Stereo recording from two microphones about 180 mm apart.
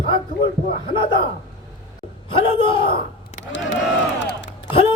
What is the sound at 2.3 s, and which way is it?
Speech, 30° left (ahead or behind).